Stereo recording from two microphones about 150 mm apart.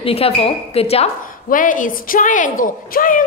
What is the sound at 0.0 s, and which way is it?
Speech, 40° left (ahead or behind).